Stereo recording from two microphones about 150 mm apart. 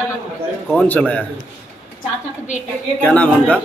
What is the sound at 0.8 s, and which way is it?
Speech, 10° left (ahead or behind).